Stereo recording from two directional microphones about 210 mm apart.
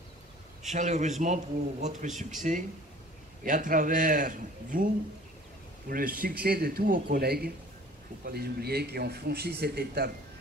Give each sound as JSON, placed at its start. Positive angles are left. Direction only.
{"t": 0.7, "sound": "a man's voice", "side_deg": -35}
{"t": 5.9, "sound": "a man's voice", "side_deg": -45}